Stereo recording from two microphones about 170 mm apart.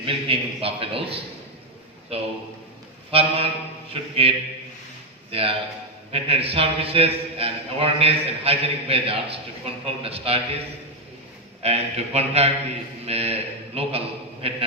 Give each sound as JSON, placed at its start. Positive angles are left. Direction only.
{"t": 0.0, "sound": "a man's voice", "side_deg": -30}
{"t": 11.6, "sound": "a man's voice", "side_deg": -40}